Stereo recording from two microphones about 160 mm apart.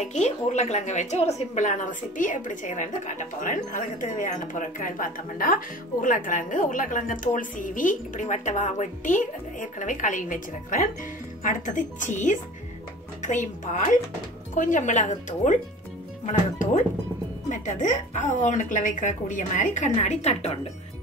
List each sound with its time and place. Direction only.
0.0 s a woman's voice: 45° left (ahead or behind)